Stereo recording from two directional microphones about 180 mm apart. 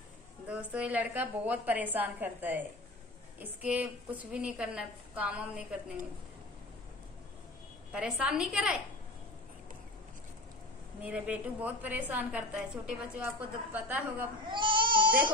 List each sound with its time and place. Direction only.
0.5 s a woman's voice: 5° right (ahead or behind)
7.9 s a woman's voice: 5° right (ahead or behind)
11.0 s a woman's voice: 5° right (ahead or behind)
14.4 s speech: 25° right (ahead or behind)